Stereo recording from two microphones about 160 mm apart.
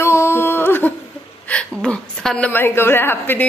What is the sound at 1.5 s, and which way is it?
A woman's voice, 5° left (ahead or behind).